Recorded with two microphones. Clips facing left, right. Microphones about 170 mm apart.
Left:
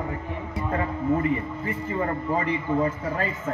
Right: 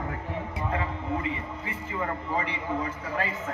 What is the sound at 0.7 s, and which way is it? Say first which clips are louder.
A man's voice: left 8 dB; 45° left (ahead or behind).